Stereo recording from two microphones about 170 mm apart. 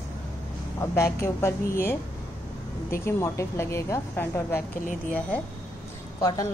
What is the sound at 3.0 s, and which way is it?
A woman's voice, 15° left (ahead or behind).